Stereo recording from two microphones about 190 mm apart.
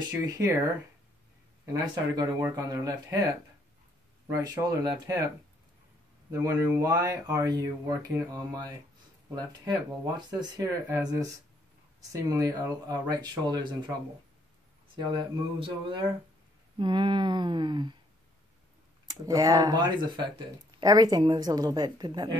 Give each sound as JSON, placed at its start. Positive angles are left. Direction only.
{"t": 0.1, "sound": "speech", "side_deg": -10}
{"t": 1.7, "sound": "speech", "side_deg": -20}
{"t": 4.4, "sound": "speech", "side_deg": -20}
{"t": 6.3, "sound": "speech", "side_deg": -15}
{"t": 12.1, "sound": "speech", "side_deg": -15}
{"t": 15.0, "sound": "speech", "side_deg": -25}
{"t": 19.0, "sound": "speech", "side_deg": -20}